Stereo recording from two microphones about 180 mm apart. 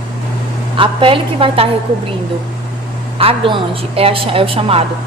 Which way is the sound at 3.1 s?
30° right (ahead or behind).